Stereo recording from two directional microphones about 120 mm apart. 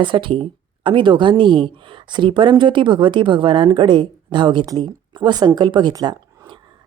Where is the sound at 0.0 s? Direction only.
45° right (ahead or behind).